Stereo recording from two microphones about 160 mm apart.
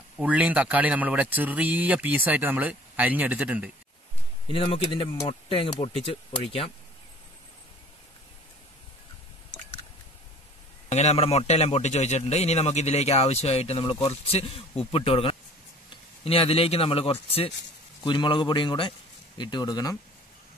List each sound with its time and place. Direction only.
0.2 s speech: 10° right (ahead or behind)
4.5 s a man's voice: 35° left (ahead or behind)
10.9 s a man's voice: 45° left (ahead or behind); by 20.0 s 25° left (ahead or behind)